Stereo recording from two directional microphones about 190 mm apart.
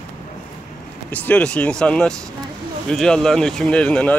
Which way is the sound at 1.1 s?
5° left (ahead or behind).